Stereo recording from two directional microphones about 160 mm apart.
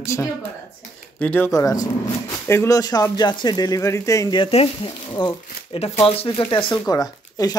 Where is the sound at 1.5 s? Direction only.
20° left (ahead or behind).